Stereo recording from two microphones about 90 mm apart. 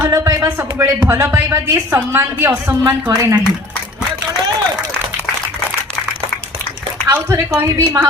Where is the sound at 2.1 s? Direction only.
25° right (ahead or behind).